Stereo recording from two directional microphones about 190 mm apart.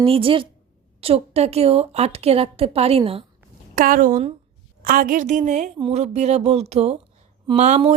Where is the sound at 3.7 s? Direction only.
45° right (ahead or behind).